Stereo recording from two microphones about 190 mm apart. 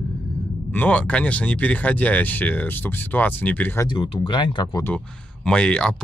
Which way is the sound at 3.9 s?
25° left (ahead or behind).